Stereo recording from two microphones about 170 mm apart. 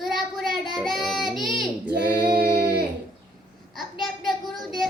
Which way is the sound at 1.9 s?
70° right (ahead or behind).